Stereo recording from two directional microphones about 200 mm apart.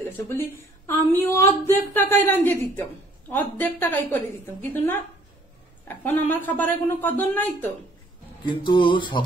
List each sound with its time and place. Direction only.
0.8 s speech: 10° left (ahead or behind)
8.5 s music: 25° left (ahead or behind)